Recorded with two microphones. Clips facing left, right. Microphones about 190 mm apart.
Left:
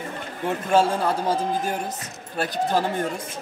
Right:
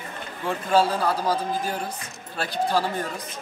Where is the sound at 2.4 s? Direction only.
45° left (ahead or behind).